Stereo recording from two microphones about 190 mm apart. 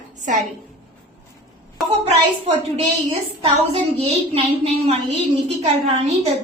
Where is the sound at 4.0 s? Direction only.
30° right (ahead or behind).